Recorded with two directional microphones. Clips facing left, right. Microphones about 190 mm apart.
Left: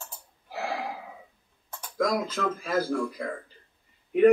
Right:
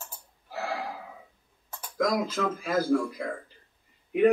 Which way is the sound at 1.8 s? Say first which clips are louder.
Even; 5° right (ahead or behind).